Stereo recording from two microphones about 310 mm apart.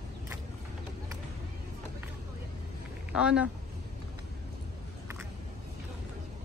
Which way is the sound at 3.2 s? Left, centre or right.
Centre.